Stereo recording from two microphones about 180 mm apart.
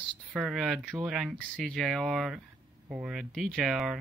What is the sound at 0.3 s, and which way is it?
Speech, 5° right (ahead or behind).